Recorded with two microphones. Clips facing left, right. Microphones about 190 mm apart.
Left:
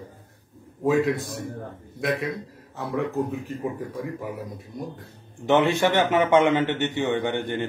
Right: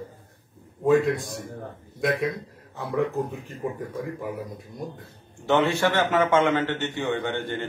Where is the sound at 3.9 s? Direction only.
Centre (ahead or behind).